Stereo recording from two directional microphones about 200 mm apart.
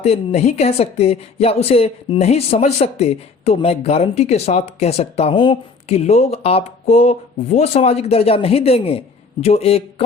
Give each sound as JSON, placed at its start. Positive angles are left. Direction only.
{"t": 0.0, "sound": "a woman's voice", "side_deg": 30}